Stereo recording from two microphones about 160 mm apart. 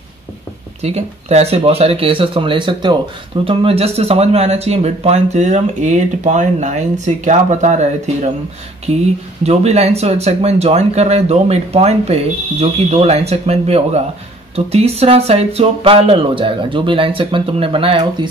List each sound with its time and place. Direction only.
0.8 s speech: 40° right (ahead or behind)